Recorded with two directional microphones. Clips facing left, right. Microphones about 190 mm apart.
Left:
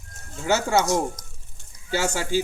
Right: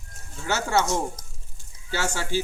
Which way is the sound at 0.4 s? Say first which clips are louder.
Left 3 dB; 15° left (ahead or behind).